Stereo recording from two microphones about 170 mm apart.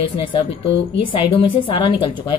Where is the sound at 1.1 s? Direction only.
30° left (ahead or behind).